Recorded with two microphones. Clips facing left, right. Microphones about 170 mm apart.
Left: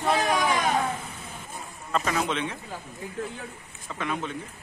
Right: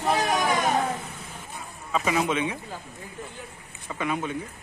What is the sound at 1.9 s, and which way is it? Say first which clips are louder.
Speech: right 2 dB; 5° right (ahead or behind).